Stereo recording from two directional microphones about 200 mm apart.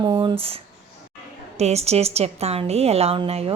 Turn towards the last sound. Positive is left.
turn(degrees=-30)  # may be behind; listen again after turning